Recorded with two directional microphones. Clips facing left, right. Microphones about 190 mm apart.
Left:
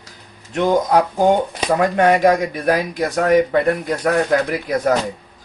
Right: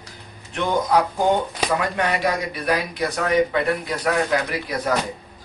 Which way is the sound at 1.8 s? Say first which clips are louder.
Left 12 dB; 45° left (ahead or behind).